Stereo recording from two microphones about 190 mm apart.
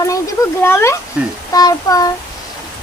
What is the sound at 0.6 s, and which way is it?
Speech, 15° left (ahead or behind).